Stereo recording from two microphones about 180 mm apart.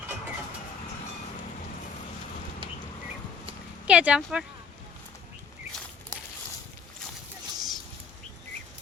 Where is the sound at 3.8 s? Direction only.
5° right (ahead or behind).